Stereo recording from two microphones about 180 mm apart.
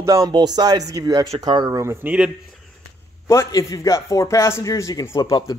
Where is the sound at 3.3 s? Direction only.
20° left (ahead or behind).